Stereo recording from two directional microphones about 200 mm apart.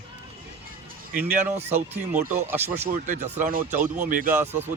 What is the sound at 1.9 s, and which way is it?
Speech, 10° right (ahead or behind).